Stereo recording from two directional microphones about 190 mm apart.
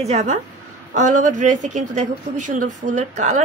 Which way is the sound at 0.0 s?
35° right (ahead or behind).